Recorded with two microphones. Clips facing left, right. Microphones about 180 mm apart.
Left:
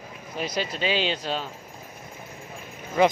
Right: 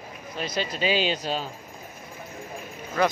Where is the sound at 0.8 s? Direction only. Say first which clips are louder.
Right 2 dB; 5° right (ahead or behind).